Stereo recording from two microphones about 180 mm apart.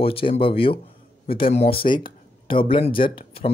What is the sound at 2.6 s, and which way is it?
Speech, 30° left (ahead or behind).